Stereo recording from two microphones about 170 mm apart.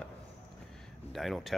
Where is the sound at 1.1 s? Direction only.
Centre (ahead or behind).